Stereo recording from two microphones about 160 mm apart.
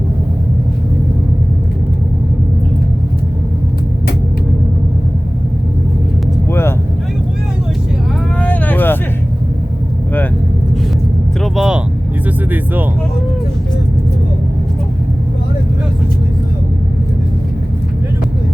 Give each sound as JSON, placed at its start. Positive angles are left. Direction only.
{"t": 6.5, "sound": "vehicle", "side_deg": 15}
{"t": 8.4, "sound": "vehicle", "side_deg": 10}
{"t": 11.5, "sound": "vehicle", "side_deg": -5}